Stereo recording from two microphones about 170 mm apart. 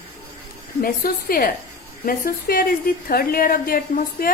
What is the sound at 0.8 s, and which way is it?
A woman's voice, 60° left (ahead or behind).